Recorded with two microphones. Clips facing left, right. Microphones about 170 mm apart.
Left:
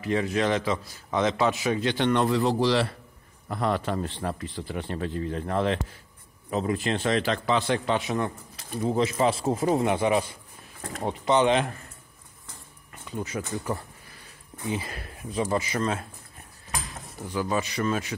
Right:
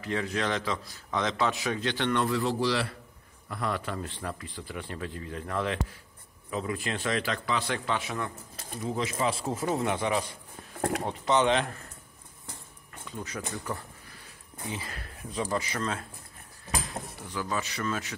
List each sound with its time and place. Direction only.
0.0 s a man's voice: 15° left (ahead or behind)
11.2 s speech: centre (ahead or behind)
13.3 s a man's voice: 20° left (ahead or behind)
14.7 s a man's voice: 15° left (ahead or behind)
17.2 s a man's voice: 20° left (ahead or behind)